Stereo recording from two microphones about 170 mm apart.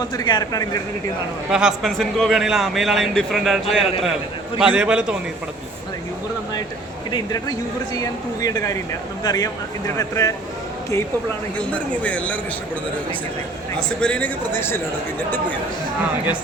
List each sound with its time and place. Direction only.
0.0 s speech: 25° left (ahead or behind)
1.5 s a man's voice: 5° right (ahead or behind)
7.1 s speech: 20° left (ahead or behind)
11.7 s a man's voice: 10° left (ahead or behind)
13.7 s a man's voice: 5° left (ahead or behind)